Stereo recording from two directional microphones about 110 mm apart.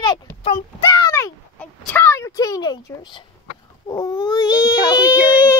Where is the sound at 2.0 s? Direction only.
25° left (ahead or behind); by 3.2 s 45° left (ahead or behind).